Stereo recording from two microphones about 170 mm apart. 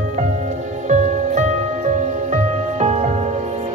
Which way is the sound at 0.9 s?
45° right (ahead or behind).